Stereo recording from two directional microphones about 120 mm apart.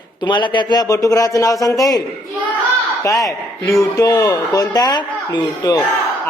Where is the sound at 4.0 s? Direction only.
30° left (ahead or behind).